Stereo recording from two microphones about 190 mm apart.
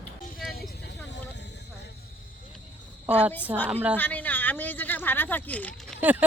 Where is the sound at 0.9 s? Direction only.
65° left (ahead or behind).